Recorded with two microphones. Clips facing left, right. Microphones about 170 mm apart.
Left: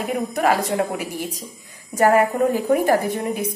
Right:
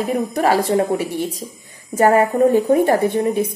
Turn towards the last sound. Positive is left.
turn(degrees=-30)  # may be behind; listen again after turning